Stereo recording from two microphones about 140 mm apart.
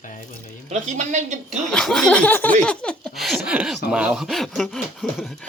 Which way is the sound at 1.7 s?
5° left (ahead or behind).